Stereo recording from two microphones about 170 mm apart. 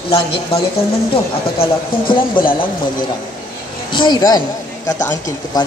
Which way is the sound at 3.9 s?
25° left (ahead or behind).